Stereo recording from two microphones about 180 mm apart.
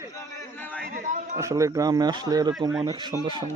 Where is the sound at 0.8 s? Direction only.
55° right (ahead or behind).